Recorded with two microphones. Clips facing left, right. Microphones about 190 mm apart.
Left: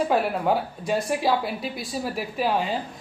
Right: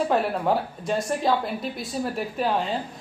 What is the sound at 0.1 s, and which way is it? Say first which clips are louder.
Speech: even; 5° left (ahead or behind).